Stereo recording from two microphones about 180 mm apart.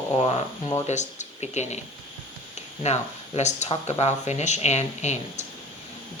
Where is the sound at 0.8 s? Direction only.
40° left (ahead or behind).